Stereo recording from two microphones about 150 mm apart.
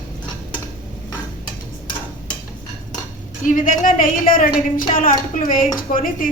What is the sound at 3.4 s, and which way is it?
Speech, 60° left (ahead or behind).